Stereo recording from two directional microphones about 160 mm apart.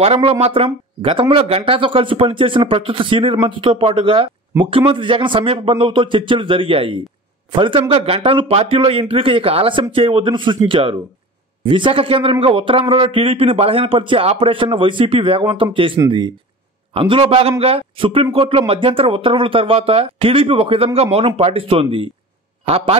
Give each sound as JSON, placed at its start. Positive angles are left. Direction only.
{"t": 0.0, "sound": "speech", "side_deg": -40}